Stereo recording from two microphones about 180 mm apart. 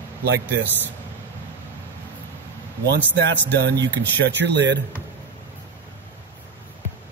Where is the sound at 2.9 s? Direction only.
75° right (ahead or behind).